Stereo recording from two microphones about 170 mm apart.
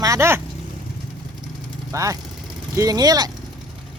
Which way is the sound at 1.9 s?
20° right (ahead or behind).